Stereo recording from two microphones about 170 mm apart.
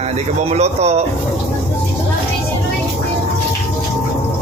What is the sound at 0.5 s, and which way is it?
Speech, 40° right (ahead or behind).